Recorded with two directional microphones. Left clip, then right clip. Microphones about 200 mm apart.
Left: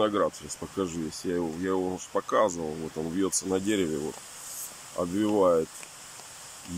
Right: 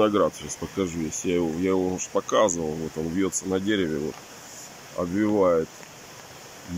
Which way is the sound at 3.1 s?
5° left (ahead or behind).